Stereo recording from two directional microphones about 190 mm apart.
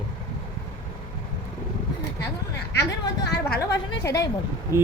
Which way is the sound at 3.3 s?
60° left (ahead or behind).